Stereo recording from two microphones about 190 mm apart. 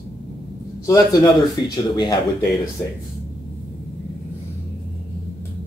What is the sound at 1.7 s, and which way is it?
Speech, 20° left (ahead or behind).